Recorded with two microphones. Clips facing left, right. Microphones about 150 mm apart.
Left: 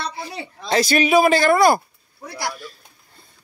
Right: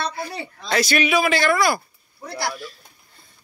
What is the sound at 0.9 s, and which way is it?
Speech, 40° left (ahead or behind).